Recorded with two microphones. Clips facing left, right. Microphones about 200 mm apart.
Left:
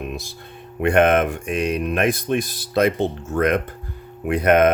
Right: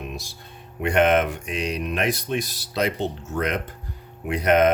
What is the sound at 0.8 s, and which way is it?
Speech, 55° left (ahead or behind).